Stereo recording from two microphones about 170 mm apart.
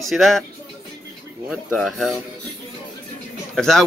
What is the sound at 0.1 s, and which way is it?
Speech, centre (ahead or behind).